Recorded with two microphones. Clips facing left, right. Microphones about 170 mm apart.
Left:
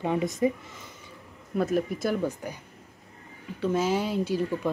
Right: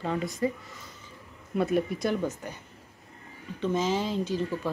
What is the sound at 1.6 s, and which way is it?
Speech, centre (ahead or behind).